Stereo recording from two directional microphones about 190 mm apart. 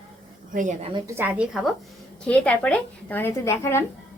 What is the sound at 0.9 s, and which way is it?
Speech, 15° right (ahead or behind).